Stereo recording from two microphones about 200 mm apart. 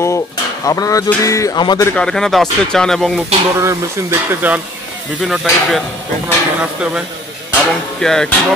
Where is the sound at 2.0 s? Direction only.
5° left (ahead or behind).